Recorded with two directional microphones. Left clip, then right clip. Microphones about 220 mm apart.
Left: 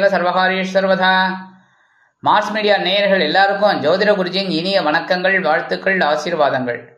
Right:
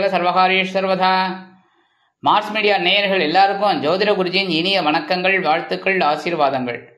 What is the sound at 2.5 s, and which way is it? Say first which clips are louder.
Speech: left 1 dB; 45° right (ahead or behind).